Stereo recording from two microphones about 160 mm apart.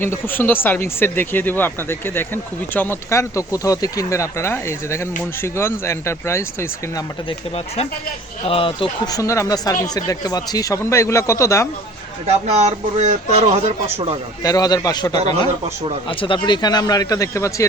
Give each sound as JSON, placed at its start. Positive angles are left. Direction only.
{"t": 0.0, "sound": "speech", "side_deg": 15}
{"t": 7.3, "sound": "speech", "side_deg": 40}
{"t": 12.2, "sound": "speech", "side_deg": -40}
{"t": 14.4, "sound": "speech", "side_deg": 25}